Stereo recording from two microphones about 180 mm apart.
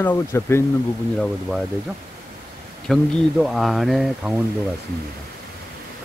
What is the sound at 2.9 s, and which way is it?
Speech, centre (ahead or behind).